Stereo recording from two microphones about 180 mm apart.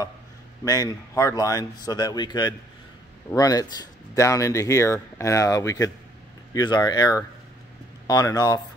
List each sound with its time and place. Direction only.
0.7 s speech: 20° left (ahead or behind)